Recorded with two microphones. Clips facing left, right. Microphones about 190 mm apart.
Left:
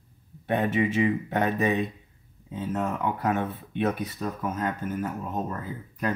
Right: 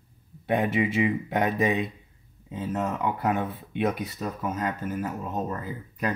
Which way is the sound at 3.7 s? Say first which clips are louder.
Even; 10° right (ahead or behind).